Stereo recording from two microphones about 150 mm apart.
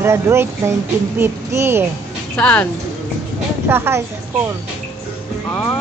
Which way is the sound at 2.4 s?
10° left (ahead or behind).